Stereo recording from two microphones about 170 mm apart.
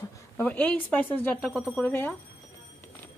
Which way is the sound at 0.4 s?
10° left (ahead or behind).